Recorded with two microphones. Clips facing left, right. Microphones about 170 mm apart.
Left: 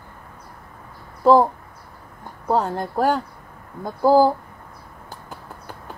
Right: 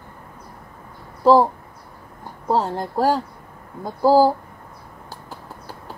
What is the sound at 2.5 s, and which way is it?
Speech, 35° right (ahead or behind).